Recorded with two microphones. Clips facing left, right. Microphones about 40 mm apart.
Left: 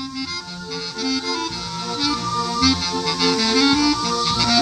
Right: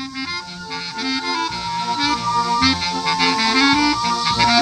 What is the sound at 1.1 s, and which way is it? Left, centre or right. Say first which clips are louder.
Music: right 2 dB; right.